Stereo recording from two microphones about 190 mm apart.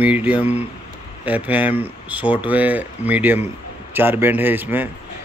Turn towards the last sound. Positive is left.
turn(degrees=-10)  # may be behind; listen again after turning